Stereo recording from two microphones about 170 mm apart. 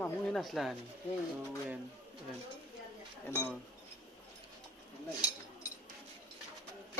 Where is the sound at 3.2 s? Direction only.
15° left (ahead or behind).